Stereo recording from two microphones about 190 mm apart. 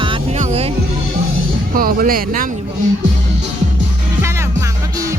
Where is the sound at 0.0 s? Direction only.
25° right (ahead or behind).